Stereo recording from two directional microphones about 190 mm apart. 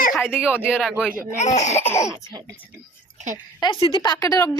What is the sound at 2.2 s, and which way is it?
Speech, 25° right (ahead or behind).